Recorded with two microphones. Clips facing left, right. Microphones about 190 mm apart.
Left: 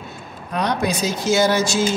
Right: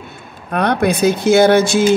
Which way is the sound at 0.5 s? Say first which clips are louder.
Right 6 dB; 55° right (ahead or behind).